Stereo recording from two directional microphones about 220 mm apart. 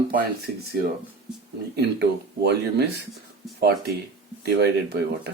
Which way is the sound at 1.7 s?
45° right (ahead or behind).